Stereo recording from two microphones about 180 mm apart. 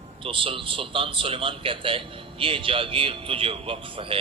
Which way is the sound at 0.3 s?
30° right (ahead or behind).